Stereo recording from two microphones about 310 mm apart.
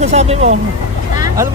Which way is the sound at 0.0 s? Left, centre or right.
Centre.